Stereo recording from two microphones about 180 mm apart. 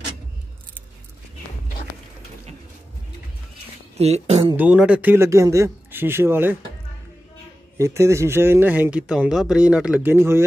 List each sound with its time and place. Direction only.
4.0 s speech: 35° right (ahead or behind)
4.6 s speech: 5° right (ahead or behind)
7.7 s speech: 15° right (ahead or behind)